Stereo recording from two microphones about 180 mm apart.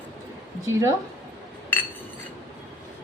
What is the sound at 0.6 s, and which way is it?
Speech, 15° right (ahead or behind).